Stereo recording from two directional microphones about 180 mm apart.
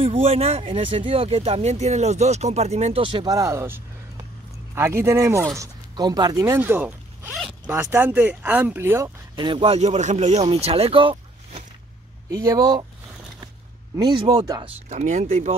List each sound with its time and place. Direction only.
0.0 s speech: 35° right (ahead or behind)
12.3 s speech: 20° right (ahead or behind)
13.9 s speech: 25° right (ahead or behind)
14.9 s speech: 40° right (ahead or behind)